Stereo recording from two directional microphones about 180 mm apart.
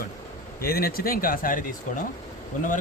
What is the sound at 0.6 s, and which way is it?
Speech, 55° left (ahead or behind).